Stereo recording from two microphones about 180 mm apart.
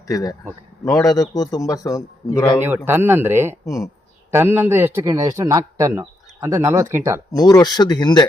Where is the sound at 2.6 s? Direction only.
10° right (ahead or behind).